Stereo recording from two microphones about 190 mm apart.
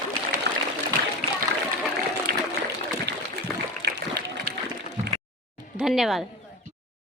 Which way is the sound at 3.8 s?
55° right (ahead or behind).